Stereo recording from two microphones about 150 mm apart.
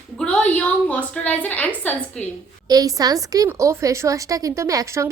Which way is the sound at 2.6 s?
25° right (ahead or behind).